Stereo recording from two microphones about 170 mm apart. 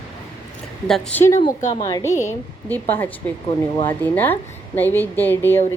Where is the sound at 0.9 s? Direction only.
5° left (ahead or behind).